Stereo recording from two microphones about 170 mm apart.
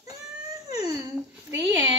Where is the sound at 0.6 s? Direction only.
40° left (ahead or behind).